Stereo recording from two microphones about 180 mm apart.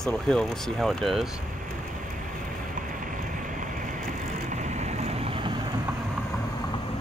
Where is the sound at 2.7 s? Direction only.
45° right (ahead or behind); by 5.6 s 30° right (ahead or behind).